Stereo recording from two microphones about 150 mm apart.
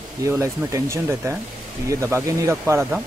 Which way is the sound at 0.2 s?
20° right (ahead or behind).